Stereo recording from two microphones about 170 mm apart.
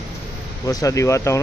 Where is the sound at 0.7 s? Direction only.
20° left (ahead or behind).